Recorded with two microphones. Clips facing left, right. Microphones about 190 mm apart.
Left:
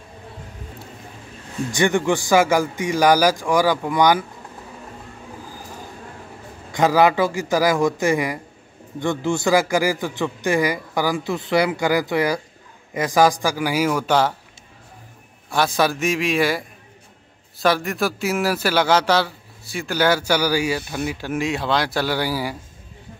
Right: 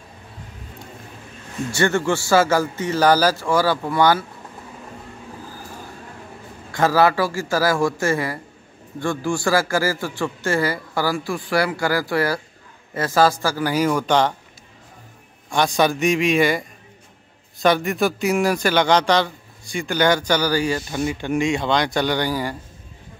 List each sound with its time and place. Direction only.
1.7 s speech: 15° left (ahead or behind)
6.7 s speech: 15° left (ahead or behind)
15.5 s a man's voice: 5° left (ahead or behind)